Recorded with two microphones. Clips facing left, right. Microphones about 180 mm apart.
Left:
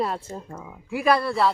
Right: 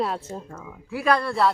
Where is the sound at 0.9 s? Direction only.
10° left (ahead or behind).